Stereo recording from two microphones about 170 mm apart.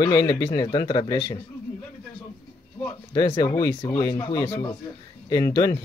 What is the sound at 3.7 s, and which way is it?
Speech, 20° left (ahead or behind).